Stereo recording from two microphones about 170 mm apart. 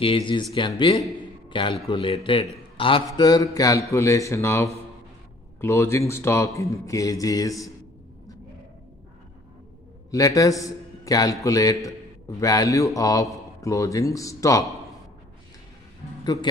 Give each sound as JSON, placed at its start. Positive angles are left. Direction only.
{"t": 0.0, "sound": "a man's voice", "side_deg": 30}
{"t": 10.1, "sound": "a man's voice", "side_deg": 20}